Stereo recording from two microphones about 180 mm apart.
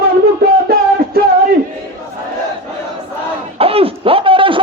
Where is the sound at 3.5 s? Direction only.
30° right (ahead or behind).